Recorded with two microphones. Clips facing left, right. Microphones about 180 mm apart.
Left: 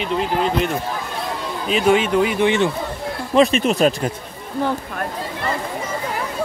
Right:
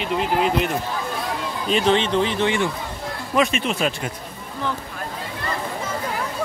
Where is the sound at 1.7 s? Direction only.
10° left (ahead or behind).